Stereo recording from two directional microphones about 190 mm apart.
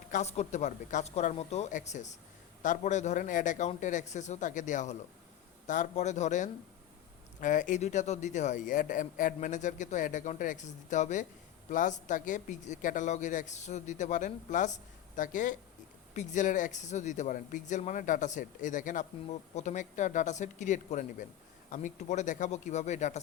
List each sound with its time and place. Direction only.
0.1 s speech: 35° left (ahead or behind)